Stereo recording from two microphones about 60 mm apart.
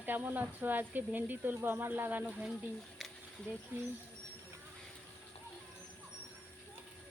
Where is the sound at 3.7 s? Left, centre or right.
Right.